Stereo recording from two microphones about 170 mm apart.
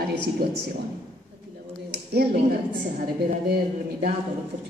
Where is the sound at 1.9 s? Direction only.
70° right (ahead or behind).